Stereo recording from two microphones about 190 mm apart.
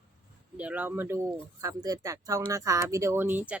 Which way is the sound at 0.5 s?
10° right (ahead or behind).